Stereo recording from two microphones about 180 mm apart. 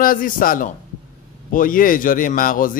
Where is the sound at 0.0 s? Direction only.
50° left (ahead or behind).